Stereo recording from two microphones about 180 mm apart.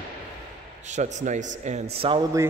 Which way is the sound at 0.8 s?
40° right (ahead or behind).